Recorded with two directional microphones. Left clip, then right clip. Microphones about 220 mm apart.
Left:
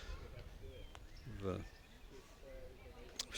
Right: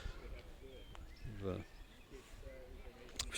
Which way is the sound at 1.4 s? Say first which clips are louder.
Even; centre (ahead or behind).